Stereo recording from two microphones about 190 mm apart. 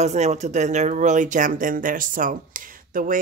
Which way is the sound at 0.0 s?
35° right (ahead or behind).